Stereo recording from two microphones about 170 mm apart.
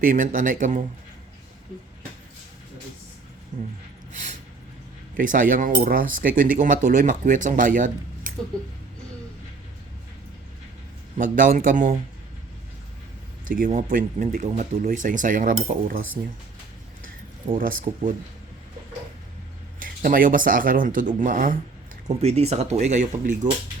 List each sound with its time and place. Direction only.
0.0 s speech: 50° right (ahead or behind)
5.1 s speech: 50° right (ahead or behind)
11.2 s speech: 50° right (ahead or behind)
13.4 s speech: 50° right (ahead or behind)
17.6 s speech: 55° right (ahead or behind)
19.8 s speech: 55° right (ahead or behind)
22.0 s speech: 40° right (ahead or behind)